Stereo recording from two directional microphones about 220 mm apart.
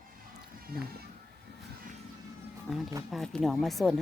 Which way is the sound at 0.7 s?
45° right (ahead or behind).